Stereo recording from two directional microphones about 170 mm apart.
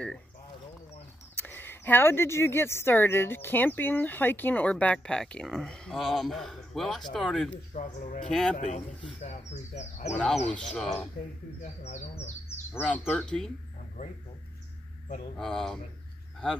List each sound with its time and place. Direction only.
1.3 s speech: 10° left (ahead or behind)
7.7 s speech: 45° left (ahead or behind)
8.3 s speech: 5° left (ahead or behind)
8.5 s speech: 40° left (ahead or behind)
10.4 s speech: 10° left (ahead or behind)
11.6 s speech: 45° left (ahead or behind)
12.4 s speech: 10° left (ahead or behind)
15.3 s speech: centre (ahead or behind)